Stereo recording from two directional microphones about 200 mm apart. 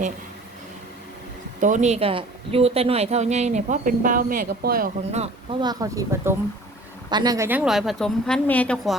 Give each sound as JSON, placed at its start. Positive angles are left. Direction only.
{"t": 1.6, "sound": "a woman's voice", "side_deg": -35}
{"t": 5.1, "sound": "a woman's voice", "side_deg": -30}